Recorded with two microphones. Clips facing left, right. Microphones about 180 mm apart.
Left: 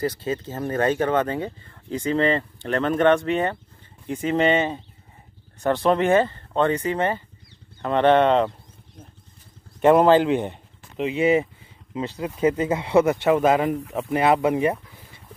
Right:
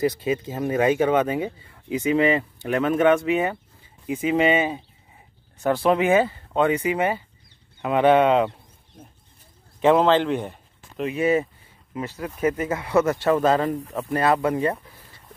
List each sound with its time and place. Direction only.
0.0 s speech: 10° right (ahead or behind)
9.8 s speech: 5° left (ahead or behind)
11.0 s speech: 20° left (ahead or behind)